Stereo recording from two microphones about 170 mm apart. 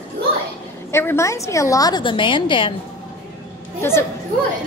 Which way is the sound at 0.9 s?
15° left (ahead or behind).